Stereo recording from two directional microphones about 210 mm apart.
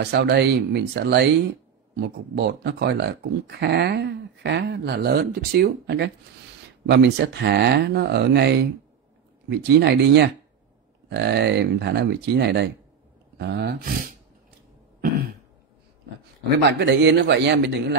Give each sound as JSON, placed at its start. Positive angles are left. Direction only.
{"t": 0.0, "sound": "speech", "side_deg": -50}
{"t": 16.7, "sound": "a man's voice", "side_deg": -55}